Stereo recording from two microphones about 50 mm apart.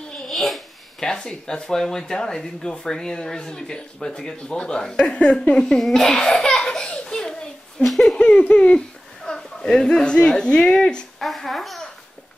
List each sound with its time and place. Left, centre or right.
0.3 s babbling: centre
1.0 s speech: centre
5.6 s speech: centre
6.3 s baby laughter: centre
7.8 s speech: centre
8.2 s speech: left
11.1 s speech: centre